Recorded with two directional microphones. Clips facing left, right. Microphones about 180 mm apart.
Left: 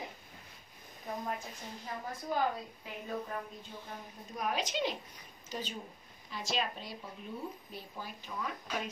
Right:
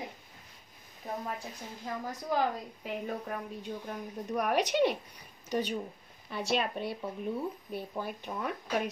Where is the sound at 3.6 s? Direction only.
65° right (ahead or behind).